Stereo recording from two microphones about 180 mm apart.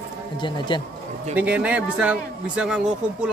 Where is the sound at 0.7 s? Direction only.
25° left (ahead or behind).